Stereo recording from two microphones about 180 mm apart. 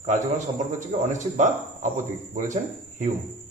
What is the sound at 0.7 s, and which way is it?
A man's voice, 45° right (ahead or behind).